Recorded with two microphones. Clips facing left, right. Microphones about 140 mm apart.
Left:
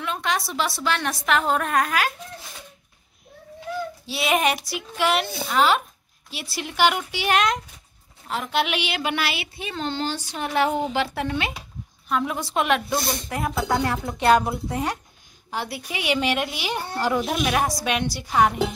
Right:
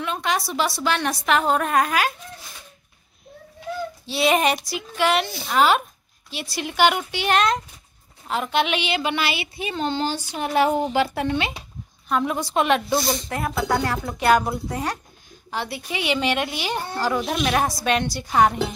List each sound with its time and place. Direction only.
0.0 s a woman's voice: centre (ahead or behind)
4.0 s a woman's voice: 5° left (ahead or behind)
14.1 s a woman's voice: 25° left (ahead or behind)
15.5 s a woman's voice: 10° left (ahead or behind)